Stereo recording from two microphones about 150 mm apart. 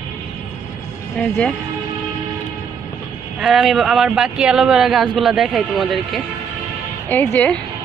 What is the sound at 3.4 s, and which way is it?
Speech, centre (ahead or behind).